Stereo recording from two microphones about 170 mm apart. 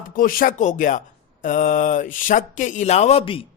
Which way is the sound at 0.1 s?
55° left (ahead or behind).